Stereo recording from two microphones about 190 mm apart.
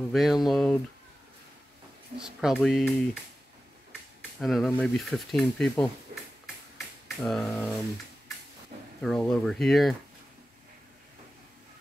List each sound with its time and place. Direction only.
0.1 s speech: centre (ahead or behind)
2.1 s speech: 5° right (ahead or behind)
4.4 s speech: centre (ahead or behind)
7.2 s speech: centre (ahead or behind)
8.7 s a sound: 40° right (ahead or behind)
9.0 s speech: 5° left (ahead or behind)